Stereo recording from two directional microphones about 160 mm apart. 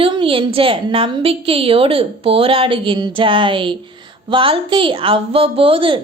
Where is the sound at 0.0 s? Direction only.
35° right (ahead or behind).